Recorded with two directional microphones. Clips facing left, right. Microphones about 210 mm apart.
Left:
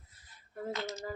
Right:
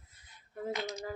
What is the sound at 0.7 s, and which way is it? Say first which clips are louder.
Speech: right 1 dB; 15° right (ahead or behind).